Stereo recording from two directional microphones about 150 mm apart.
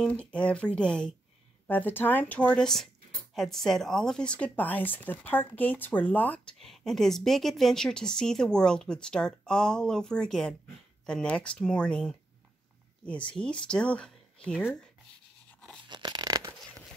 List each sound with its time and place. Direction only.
0.0 s a woman's voice: 5° left (ahead or behind)
13.3 s speech: 5° left (ahead or behind)
15.9 s a sound: 30° right (ahead or behind)